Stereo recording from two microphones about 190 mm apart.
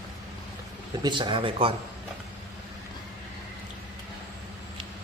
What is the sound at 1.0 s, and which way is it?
Speech, 25° right (ahead or behind).